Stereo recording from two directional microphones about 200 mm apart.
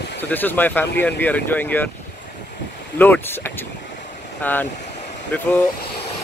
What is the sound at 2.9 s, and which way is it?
Speech, 10° left (ahead or behind).